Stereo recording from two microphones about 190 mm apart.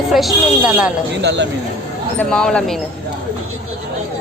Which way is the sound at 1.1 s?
65° right (ahead or behind).